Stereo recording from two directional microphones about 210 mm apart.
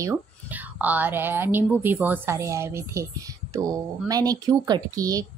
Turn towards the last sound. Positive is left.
turn(degrees=-15)  # may be behind; listen again after turning